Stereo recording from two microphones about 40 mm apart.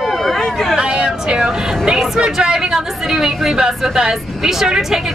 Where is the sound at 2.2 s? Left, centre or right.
Right.